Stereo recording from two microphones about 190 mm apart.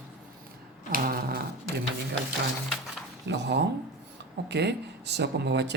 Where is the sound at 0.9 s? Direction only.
50° right (ahead or behind).